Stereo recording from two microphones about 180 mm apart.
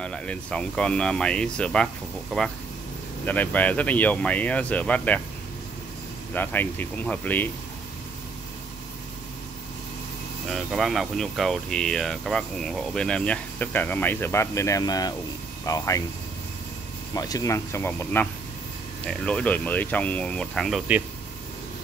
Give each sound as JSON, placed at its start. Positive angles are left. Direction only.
{"t": 0.0, "sound": "speech", "side_deg": 5}
{"t": 3.3, "sound": "speech", "side_deg": 10}
{"t": 6.3, "sound": "speech", "side_deg": 10}
{"t": 10.5, "sound": "speech", "side_deg": 0}
{"t": 17.1, "sound": "speech", "side_deg": 20}